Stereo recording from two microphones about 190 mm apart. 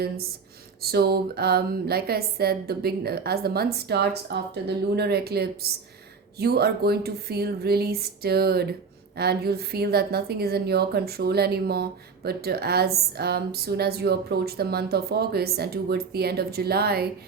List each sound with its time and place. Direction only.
0.8 s a woman's voice: 55° right (ahead or behind)